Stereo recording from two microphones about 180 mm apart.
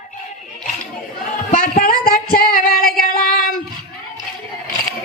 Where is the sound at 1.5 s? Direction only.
50° left (ahead or behind).